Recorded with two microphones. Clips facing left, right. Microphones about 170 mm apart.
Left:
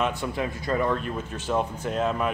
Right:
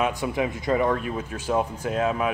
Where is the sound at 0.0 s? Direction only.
15° right (ahead or behind).